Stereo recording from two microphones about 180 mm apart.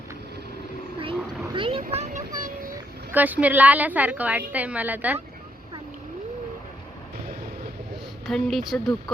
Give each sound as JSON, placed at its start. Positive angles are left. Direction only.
{"t": 1.5, "sound": "vehicle", "side_deg": -30}
{"t": 1.8, "sound": "a sound", "side_deg": -40}
{"t": 3.1, "sound": "a woman's voice", "side_deg": -10}
{"t": 8.3, "sound": "speech", "side_deg": 0}